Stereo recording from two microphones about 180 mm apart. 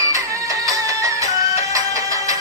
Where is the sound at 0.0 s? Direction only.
20° right (ahead or behind).